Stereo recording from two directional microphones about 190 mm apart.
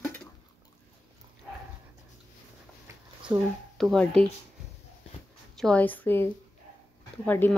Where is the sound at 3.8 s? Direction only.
Centre (ahead or behind).